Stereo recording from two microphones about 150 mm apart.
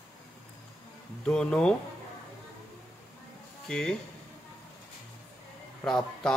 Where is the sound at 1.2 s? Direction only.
5° left (ahead or behind).